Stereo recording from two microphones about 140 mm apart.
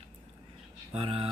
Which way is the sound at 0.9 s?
45° right (ahead or behind).